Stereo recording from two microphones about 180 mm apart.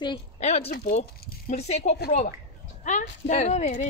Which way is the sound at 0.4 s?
40° left (ahead or behind).